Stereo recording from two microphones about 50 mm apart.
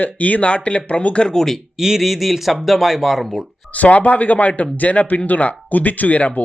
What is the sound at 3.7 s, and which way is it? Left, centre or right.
Speech, left.